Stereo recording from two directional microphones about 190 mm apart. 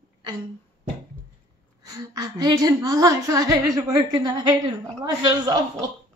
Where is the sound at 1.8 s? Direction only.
20° right (ahead or behind).